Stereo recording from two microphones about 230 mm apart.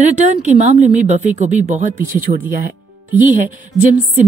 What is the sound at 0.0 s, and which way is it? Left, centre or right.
A woman's voice, right.